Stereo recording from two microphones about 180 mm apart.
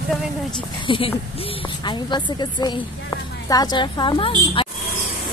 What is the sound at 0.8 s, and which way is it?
A woman's voice, 30° left (ahead or behind).